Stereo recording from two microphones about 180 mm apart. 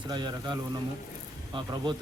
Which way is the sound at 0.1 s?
25° right (ahead or behind).